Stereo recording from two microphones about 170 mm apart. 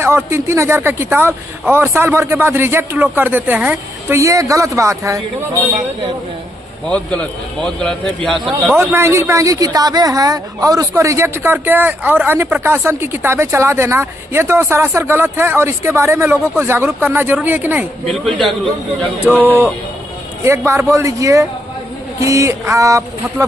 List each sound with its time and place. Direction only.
0.0 s speech: 15° right (ahead or behind)
6.9 s a man's voice: 5° left (ahead or behind)
8.9 s speech: 15° right (ahead or behind)
18.0 s a man's voice: centre (ahead or behind)
19.4 s speech: 15° right (ahead or behind)